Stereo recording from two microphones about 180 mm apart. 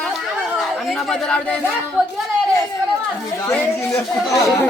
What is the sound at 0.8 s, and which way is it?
Speech, centre (ahead or behind).